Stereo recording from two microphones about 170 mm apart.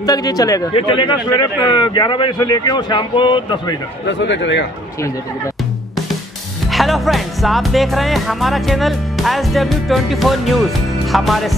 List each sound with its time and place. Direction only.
0.0 s a man's voice: 20° left (ahead or behind)
4.0 s speech: 90° left
6.7 s music: centre (ahead or behind)